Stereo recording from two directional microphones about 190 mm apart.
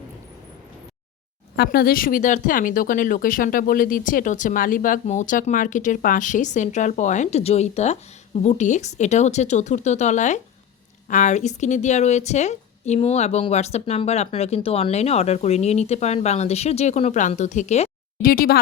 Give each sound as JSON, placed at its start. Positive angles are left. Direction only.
{"t": 1.5, "sound": "a woman's voice", "side_deg": 55}
{"t": 18.3, "sound": "speech", "side_deg": 50}